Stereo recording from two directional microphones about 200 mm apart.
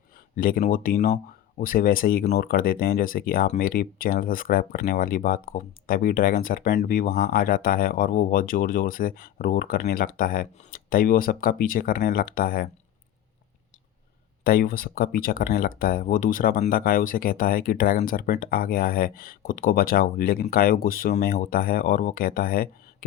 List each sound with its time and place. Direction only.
0.3 s speech: 45° left (ahead or behind)
14.4 s speech: 45° left (ahead or behind)